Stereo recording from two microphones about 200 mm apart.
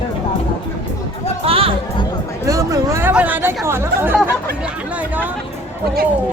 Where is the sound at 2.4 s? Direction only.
15° right (ahead or behind).